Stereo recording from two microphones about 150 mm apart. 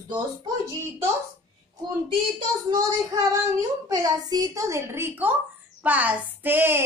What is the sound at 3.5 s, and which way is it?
A woman's voice, 25° right (ahead or behind).